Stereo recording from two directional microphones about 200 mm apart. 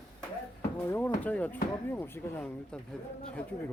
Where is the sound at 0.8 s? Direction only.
10° left (ahead or behind).